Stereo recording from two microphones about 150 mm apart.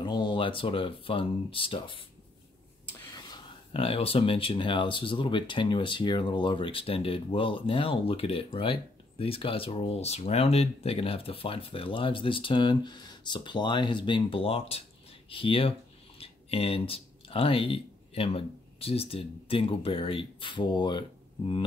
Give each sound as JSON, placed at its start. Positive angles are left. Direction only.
{"t": 0.0, "sound": "speech", "side_deg": 30}
{"t": 3.2, "sound": "speech", "side_deg": 30}